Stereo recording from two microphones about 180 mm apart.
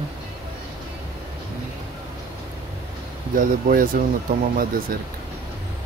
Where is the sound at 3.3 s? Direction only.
50° right (ahead or behind).